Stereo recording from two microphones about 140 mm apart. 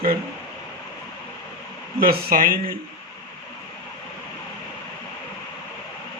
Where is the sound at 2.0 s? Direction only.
90° right.